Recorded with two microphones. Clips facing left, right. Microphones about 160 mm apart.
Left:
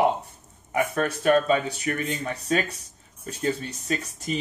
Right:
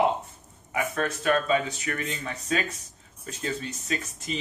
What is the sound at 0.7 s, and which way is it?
Speech, 35° left (ahead or behind).